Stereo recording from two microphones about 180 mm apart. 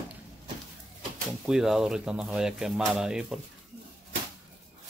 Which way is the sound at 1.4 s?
5° right (ahead or behind).